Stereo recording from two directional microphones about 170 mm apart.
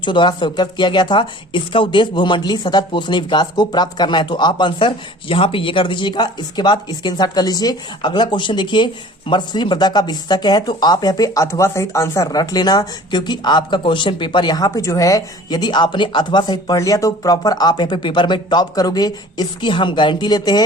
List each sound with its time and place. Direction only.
0.0 s speech: 25° left (ahead or behind)